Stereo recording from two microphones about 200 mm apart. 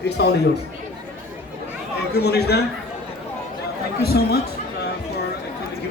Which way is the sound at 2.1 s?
55° left (ahead or behind).